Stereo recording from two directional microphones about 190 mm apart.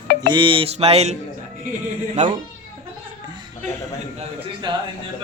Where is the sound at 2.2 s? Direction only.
40° right (ahead or behind).